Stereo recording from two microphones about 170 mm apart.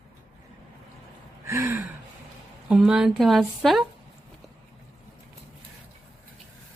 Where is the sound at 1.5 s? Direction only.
15° right (ahead or behind).